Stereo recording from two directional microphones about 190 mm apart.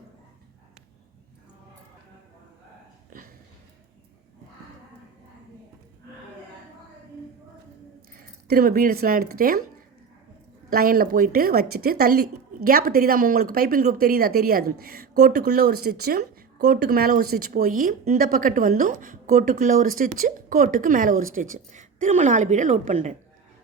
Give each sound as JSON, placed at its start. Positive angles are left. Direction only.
{"t": 3.1, "sound": "a sound", "side_deg": -45}
{"t": 8.4, "sound": "a woman's voice", "side_deg": -50}
{"t": 10.7, "sound": "a woman's voice", "side_deg": -50}